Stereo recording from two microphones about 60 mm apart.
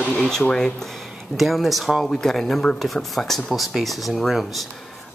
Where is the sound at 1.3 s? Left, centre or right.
Centre.